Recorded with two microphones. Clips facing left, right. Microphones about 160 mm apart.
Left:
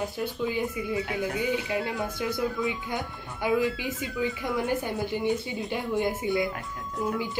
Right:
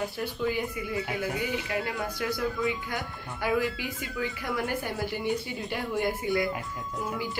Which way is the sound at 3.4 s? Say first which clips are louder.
Left 2 dB; 20° left (ahead or behind).